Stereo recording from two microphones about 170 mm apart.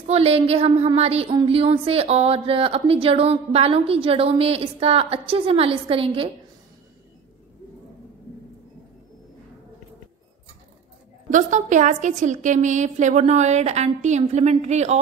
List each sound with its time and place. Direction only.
0.0 s a woman's voice: 35° right (ahead or behind)
11.2 s a woman's voice: 45° right (ahead or behind)